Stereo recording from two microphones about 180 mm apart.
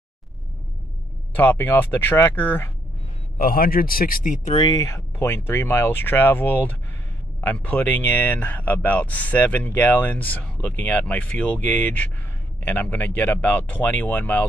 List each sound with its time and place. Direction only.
1.3 s speech: 10° left (ahead or behind)
3.3 s speech: 55° left (ahead or behind)
4.6 s speech: 20° left (ahead or behind)